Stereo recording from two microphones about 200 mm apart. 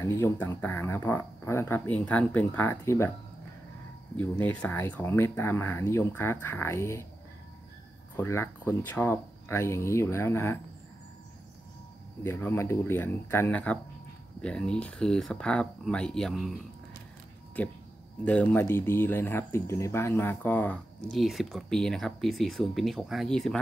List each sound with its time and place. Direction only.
0.0 s speech: 15° left (ahead or behind)
4.2 s speech: 5° left (ahead or behind)
8.2 s speech: 10° left (ahead or behind)
12.2 s speech: 10° left (ahead or behind)
17.6 s speech: 10° left (ahead or behind)